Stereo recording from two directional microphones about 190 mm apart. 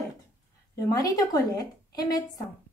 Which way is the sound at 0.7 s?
20° left (ahead or behind).